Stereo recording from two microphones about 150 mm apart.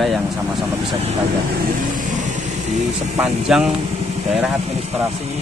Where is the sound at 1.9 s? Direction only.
55° right (ahead or behind).